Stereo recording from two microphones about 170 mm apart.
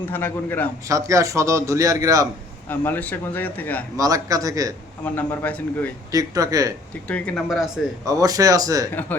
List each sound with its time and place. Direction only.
0.1 s speech: 10° left (ahead or behind)
0.9 s a man's voice: 20° right (ahead or behind)
2.6 s speech: 10° left (ahead or behind)
3.9 s a man's voice: 20° right (ahead or behind)
5.0 s speech: 10° left (ahead or behind)
6.1 s a man's voice: 20° right (ahead or behind)
7.1 s speech: centre (ahead or behind)
8.0 s a man's voice: 20° right (ahead or behind)